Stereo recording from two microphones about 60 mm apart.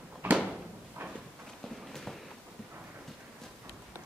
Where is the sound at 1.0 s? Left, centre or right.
Right.